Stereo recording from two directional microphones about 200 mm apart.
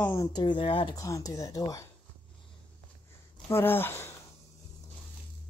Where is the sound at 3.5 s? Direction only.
10° left (ahead or behind).